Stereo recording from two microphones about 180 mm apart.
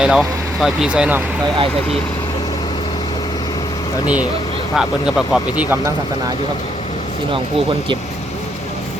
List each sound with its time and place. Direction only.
0.0 s speech: 5° right (ahead or behind)
1.5 s speech: 30° right (ahead or behind)
4.0 s speech: 10° right (ahead or behind)